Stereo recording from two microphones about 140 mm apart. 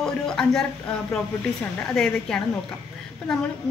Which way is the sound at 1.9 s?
5° left (ahead or behind).